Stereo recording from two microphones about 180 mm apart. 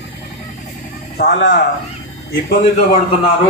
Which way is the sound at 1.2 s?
65° left (ahead or behind).